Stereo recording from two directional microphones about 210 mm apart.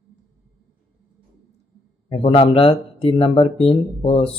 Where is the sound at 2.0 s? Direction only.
25° left (ahead or behind).